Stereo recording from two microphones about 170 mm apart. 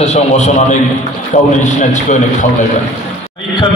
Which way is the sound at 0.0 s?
40° left (ahead or behind).